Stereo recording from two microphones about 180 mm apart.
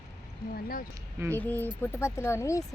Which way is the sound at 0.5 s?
55° left (ahead or behind).